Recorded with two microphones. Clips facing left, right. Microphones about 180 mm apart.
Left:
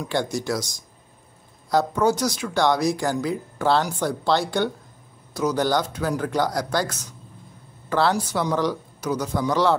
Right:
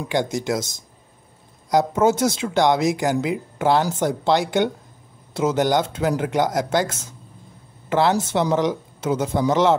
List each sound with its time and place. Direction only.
0.1 s speech: 20° right (ahead or behind)